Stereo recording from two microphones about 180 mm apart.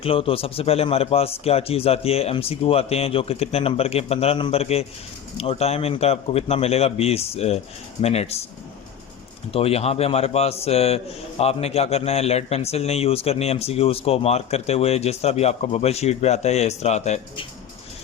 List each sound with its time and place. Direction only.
0.0 s a man's voice: 30° left (ahead or behind)
9.5 s a man's voice: 35° left (ahead or behind)